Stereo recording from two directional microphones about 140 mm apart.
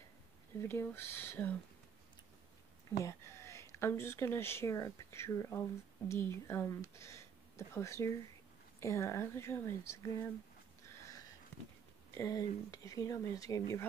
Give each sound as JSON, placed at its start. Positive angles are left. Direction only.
{"t": 0.6, "sound": "speech", "side_deg": 15}
{"t": 3.0, "sound": "speech", "side_deg": 20}
{"t": 12.1, "sound": "speech", "side_deg": 25}